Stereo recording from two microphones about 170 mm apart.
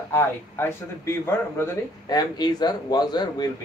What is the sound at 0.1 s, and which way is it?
A man's voice, 15° left (ahead or behind).